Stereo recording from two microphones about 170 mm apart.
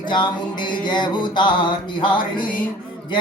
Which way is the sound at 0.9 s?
25° left (ahead or behind).